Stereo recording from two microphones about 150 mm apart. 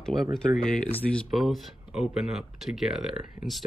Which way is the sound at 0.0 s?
Centre (ahead or behind).